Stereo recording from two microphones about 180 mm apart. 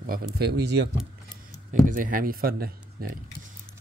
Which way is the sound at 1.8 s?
50° right (ahead or behind).